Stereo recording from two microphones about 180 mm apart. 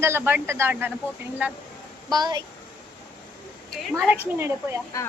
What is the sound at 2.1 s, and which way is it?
Speech, 20° right (ahead or behind).